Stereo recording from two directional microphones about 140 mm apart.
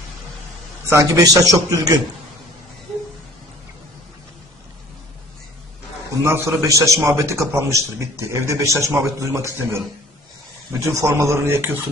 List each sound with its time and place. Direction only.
0.8 s a man's voice: 20° right (ahead or behind)
6.2 s a man's voice: 20° right (ahead or behind)
10.8 s speech: 20° right (ahead or behind)